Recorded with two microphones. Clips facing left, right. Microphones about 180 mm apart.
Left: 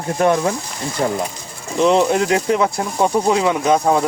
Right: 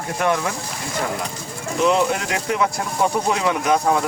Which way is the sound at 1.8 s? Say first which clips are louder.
Left 4 dB; 35° left (ahead or behind).